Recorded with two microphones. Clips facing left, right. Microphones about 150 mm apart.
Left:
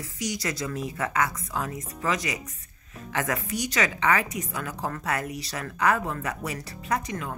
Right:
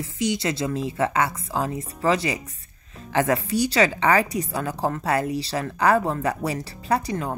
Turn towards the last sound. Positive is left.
turn(degrees=-35)  # may be behind; listen again after turning